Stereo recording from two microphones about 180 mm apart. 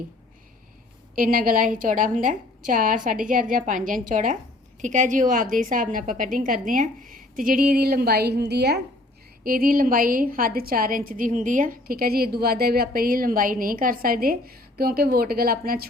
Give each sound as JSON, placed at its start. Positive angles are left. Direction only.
{"t": 1.1, "sound": "a woman's voice", "side_deg": -55}
{"t": 9.4, "sound": "a woman's voice", "side_deg": -55}